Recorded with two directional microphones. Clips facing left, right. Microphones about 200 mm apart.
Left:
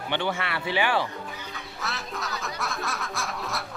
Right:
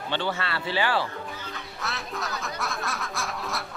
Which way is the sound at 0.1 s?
15° left (ahead or behind).